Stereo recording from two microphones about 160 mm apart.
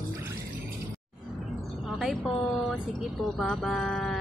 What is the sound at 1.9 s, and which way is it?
Music, centre (ahead or behind).